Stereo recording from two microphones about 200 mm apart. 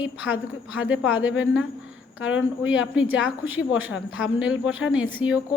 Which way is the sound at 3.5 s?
80° left.